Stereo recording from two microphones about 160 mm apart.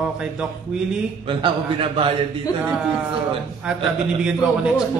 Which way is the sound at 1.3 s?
30° right (ahead or behind).